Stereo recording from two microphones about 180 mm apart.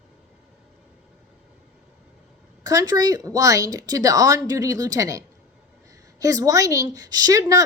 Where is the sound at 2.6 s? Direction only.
20° right (ahead or behind).